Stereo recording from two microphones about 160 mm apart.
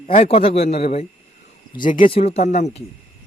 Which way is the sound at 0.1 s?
45° left (ahead or behind).